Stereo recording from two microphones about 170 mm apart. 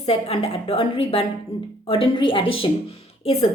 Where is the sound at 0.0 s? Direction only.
35° left (ahead or behind).